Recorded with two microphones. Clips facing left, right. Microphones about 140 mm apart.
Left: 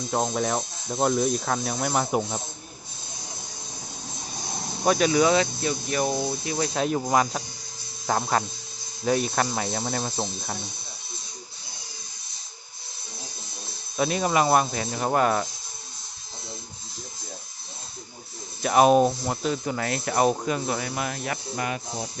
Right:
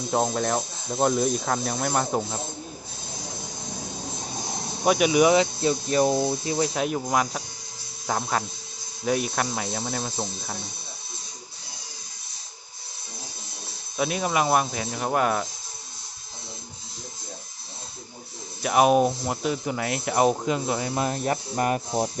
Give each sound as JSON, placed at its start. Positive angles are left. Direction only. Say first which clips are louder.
{"t": 0.1, "sound": "speech", "louder": "right 1 dB", "side_deg": -5}
{"t": 4.8, "sound": "speech", "louder": "right 1 dB", "side_deg": -10}
{"t": 6.4, "sound": "speech", "louder": "right 3 dB", "side_deg": -25}
{"t": 6.7, "sound": "speech", "louder": "left 2 dB", "side_deg": -10}
{"t": 9.0, "sound": "speech", "louder": "left 1 dB", "side_deg": -10}
{"t": 13.9, "sound": "speech", "louder": "left 2 dB", "side_deg": -5}
{"t": 18.6, "sound": "speech", "louder": "left 1 dB", "side_deg": -5}